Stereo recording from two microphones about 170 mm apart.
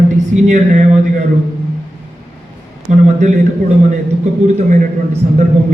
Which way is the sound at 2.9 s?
45° right (ahead or behind).